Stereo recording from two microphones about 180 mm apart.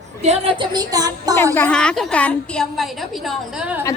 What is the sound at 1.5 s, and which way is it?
A woman's voice, 5° left (ahead or behind).